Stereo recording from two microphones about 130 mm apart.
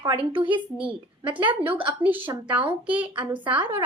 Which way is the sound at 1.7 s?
40° right (ahead or behind).